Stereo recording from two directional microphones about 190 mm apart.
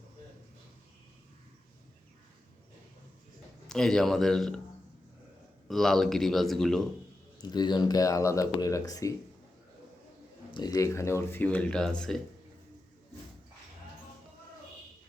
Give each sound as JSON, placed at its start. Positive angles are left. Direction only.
{"t": 3.7, "sound": "speech", "side_deg": 5}
{"t": 5.6, "sound": "speech", "side_deg": 0}
{"t": 7.5, "sound": "speech", "side_deg": 20}
{"t": 10.5, "sound": "speech", "side_deg": 20}